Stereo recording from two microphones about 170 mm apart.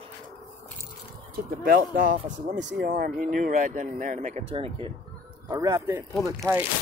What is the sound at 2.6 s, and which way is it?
Speech, 80° right.